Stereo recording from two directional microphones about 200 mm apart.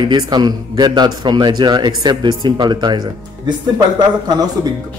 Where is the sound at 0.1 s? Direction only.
20° right (ahead or behind).